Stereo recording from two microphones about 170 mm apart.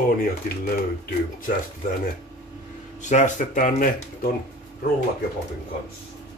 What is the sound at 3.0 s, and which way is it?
Speech, 45° left (ahead or behind).